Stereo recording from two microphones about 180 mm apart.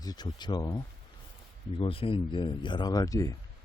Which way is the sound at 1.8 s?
30° left (ahead or behind).